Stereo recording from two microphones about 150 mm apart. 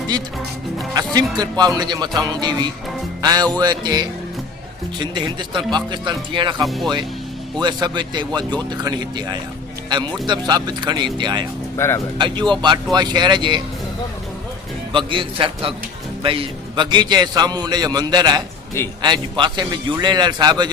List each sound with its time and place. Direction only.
1.4 s a man's voice: 25° right (ahead or behind)
6.7 s speech: centre (ahead or behind)
7.6 s a man's voice: 30° right (ahead or behind)
11.8 s speech: 15° left (ahead or behind)
12.1 s a man's voice: 30° right (ahead or behind)
14.9 s a man's voice: 35° right (ahead or behind)